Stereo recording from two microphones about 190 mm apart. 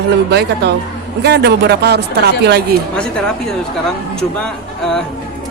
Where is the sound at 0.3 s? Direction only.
60° right (ahead or behind).